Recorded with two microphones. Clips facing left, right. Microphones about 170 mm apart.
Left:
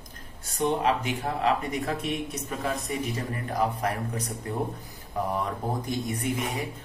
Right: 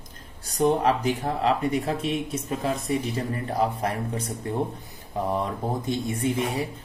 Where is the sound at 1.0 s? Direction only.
35° right (ahead or behind).